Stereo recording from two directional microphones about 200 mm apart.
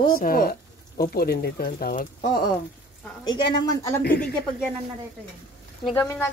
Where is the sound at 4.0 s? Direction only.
45° left (ahead or behind).